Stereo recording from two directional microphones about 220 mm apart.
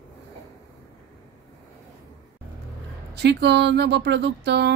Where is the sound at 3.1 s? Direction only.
50° right (ahead or behind).